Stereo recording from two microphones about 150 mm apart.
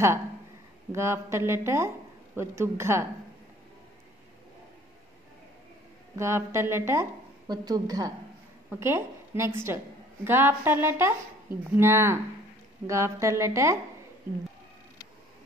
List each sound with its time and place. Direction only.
0.9 s a woman's voice: 15° right (ahead or behind)
6.1 s a woman's voice: 15° right (ahead or behind)
7.4 s a woman's voice: 25° right (ahead or behind)